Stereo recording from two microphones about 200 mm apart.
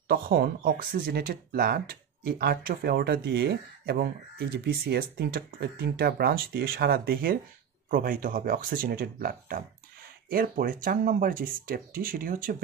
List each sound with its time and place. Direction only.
0.1 s speech: 50° right (ahead or behind)